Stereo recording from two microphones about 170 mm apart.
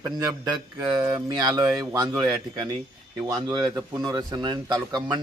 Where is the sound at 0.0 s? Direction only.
20° right (ahead or behind).